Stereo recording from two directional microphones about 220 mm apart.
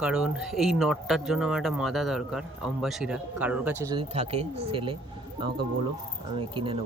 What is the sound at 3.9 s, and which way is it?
Speech, 25° right (ahead or behind).